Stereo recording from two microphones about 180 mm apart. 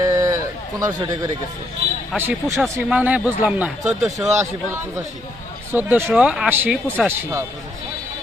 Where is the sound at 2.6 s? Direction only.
10° right (ahead or behind).